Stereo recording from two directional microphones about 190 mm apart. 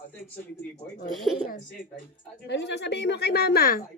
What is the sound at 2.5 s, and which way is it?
A woman's voice, 65° left (ahead or behind).